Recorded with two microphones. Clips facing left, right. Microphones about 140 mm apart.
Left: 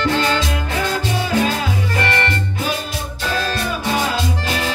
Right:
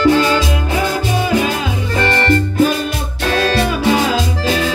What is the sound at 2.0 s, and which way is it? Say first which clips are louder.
Music: right 8 dB; 35° right (ahead or behind).